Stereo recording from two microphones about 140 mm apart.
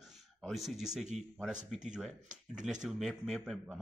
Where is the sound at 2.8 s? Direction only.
Centre (ahead or behind).